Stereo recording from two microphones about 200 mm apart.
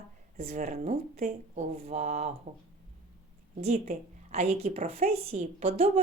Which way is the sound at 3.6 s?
35° right (ahead or behind).